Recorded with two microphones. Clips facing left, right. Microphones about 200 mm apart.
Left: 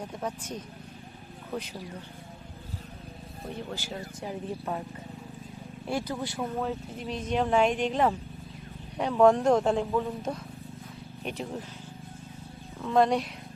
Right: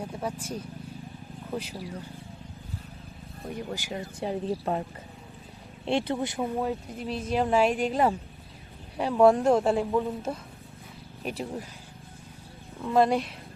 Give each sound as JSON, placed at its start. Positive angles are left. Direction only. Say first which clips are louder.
{"t": 0.0, "sound": "speech", "louder": "right 2 dB", "side_deg": -10}
{"t": 3.5, "sound": "speech", "louder": "right 3 dB", "side_deg": -15}
{"t": 4.2, "sound": "speech", "louder": "right 7 dB", "side_deg": -30}
{"t": 5.8, "sound": "a woman's voice", "louder": "right 5 dB", "side_deg": -25}
{"t": 12.8, "sound": "a woman's voice", "louder": "right 1 dB", "side_deg": -5}